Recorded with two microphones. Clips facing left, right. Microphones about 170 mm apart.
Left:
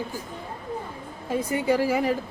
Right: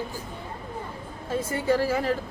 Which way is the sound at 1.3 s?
15° left (ahead or behind).